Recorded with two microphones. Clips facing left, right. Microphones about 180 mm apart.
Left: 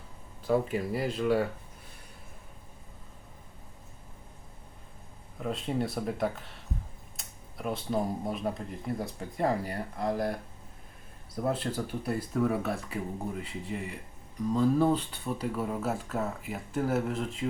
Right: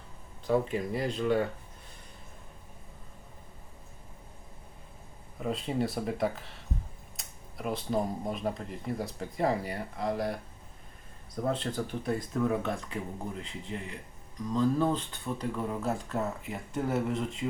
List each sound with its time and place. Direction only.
0.4 s speech: 5° left (ahead or behind)
5.4 s speech: centre (ahead or behind)
11.3 s speech: 5° left (ahead or behind)